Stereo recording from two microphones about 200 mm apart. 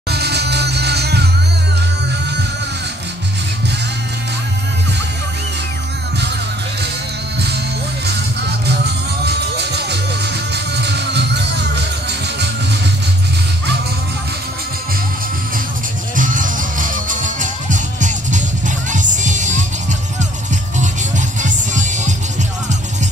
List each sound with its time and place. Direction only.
0.1 s music: 55° right (ahead or behind)
8.4 s music: 55° right (ahead or behind)
16.2 s music: 40° right (ahead or behind)
20.7 s music: 40° right (ahead or behind)